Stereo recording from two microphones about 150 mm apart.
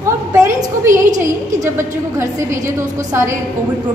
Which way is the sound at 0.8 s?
20° right (ahead or behind).